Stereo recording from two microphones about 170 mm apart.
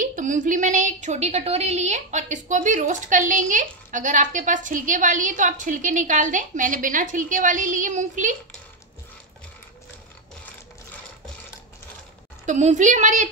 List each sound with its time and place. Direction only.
0.0 s a woman's voice: 50° right (ahead or behind)
12.4 s a woman's voice: 45° right (ahead or behind)